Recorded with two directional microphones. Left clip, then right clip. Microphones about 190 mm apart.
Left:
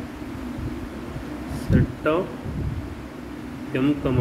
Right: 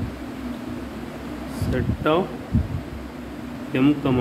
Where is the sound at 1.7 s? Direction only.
35° right (ahead or behind).